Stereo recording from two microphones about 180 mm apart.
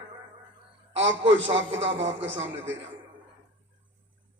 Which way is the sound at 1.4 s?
90° right.